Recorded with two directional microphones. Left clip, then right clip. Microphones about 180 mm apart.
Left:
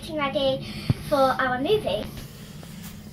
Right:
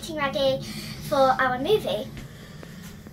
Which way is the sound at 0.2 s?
15° right (ahead or behind).